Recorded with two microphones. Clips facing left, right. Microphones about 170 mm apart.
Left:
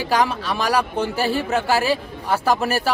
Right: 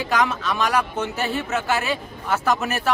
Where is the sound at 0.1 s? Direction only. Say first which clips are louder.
Left 2 dB; 30° left (ahead or behind).